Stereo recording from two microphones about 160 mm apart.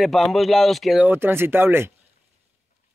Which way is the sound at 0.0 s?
Centre (ahead or behind).